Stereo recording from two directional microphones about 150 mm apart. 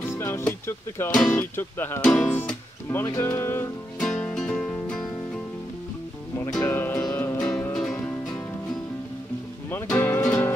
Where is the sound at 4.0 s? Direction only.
5° left (ahead or behind).